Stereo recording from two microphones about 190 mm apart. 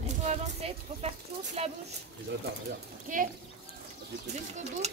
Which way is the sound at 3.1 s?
45° right (ahead or behind).